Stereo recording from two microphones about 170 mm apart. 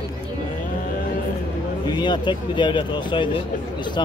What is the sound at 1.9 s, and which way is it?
Speech, 25° left (ahead or behind).